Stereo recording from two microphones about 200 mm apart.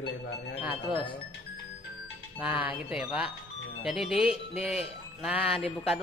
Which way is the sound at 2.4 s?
10° right (ahead or behind).